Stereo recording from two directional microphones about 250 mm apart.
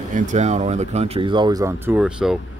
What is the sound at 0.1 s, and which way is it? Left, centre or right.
A man's voice, right.